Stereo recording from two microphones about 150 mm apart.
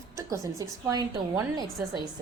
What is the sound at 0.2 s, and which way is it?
A woman's voice, 20° right (ahead or behind).